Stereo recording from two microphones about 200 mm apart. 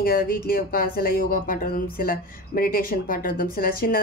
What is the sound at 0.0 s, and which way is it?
Speech, 45° left (ahead or behind).